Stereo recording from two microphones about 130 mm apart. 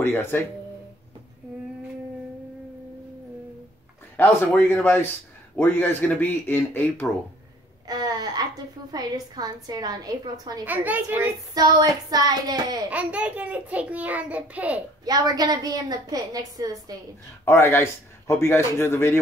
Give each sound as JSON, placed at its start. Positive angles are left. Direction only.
{"t": 0.0, "sound": "speech", "side_deg": 15}
{"t": 4.5, "sound": "speech", "side_deg": 10}
{"t": 7.8, "sound": "a woman's voice", "side_deg": -30}
{"t": 10.6, "sound": "a child's voice", "side_deg": -15}
{"t": 11.5, "sound": "a woman's voice", "side_deg": -30}
{"t": 12.9, "sound": "a child's voice", "side_deg": -10}
{"t": 15.0, "sound": "a woman's voice", "side_deg": -30}
{"t": 17.5, "sound": "a man's voice", "side_deg": 20}